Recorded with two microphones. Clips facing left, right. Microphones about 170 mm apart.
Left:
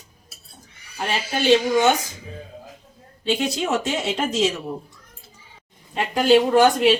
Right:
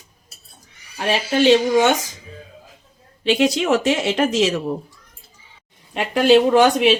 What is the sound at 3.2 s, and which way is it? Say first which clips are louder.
Speech: right 5 dB; 90° right.